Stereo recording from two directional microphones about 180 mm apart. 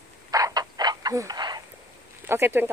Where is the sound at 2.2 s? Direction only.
10° right (ahead or behind).